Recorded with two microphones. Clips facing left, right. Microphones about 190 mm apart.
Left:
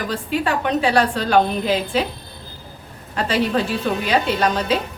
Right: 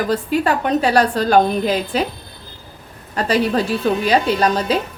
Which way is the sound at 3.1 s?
40° right (ahead or behind).